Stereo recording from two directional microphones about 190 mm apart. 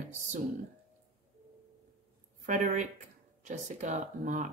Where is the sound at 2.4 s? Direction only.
40° right (ahead or behind).